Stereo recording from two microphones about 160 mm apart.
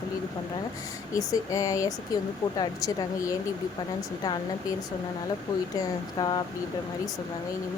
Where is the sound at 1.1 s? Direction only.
20° left (ahead or behind).